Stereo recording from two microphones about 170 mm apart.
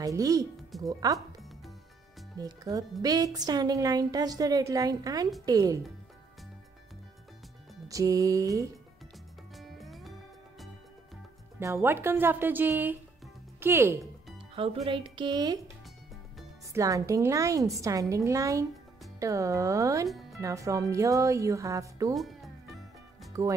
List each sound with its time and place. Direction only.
0.0 s speech: 20° right (ahead or behind)
0.6 s music: centre (ahead or behind)
0.8 s speech: 20° right (ahead or behind)
2.3 s speech: 20° right (ahead or behind)
7.9 s speech: 20° right (ahead or behind)
9.6 s music: centre (ahead or behind)
11.6 s speech: 15° right (ahead or behind)
14.5 s speech: 35° right (ahead or behind)
16.7 s speech: 20° right (ahead or behind)
20.1 s music: centre (ahead or behind)
20.3 s speech: 20° right (ahead or behind)
22.1 s music: centre (ahead or behind)
23.3 s speech: 20° right (ahead or behind)